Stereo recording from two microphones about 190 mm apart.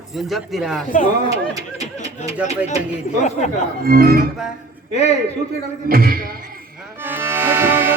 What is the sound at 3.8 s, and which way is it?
Speech, 50° right (ahead or behind).